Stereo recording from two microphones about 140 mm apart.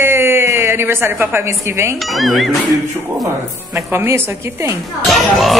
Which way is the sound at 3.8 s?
15° right (ahead or behind).